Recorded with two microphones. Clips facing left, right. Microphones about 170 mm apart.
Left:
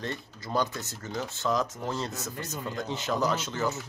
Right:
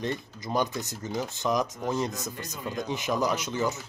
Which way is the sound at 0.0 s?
15° right (ahead or behind).